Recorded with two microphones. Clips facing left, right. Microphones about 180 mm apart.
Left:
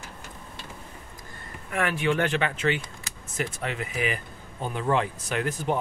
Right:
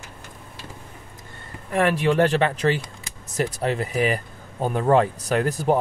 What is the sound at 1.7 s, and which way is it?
Speech, 35° right (ahead or behind).